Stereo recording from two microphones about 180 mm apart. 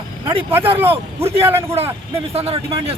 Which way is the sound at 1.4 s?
15° right (ahead or behind).